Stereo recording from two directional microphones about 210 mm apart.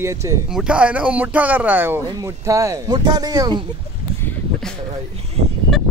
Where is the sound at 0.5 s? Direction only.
5° right (ahead or behind); by 3.6 s 20° right (ahead or behind).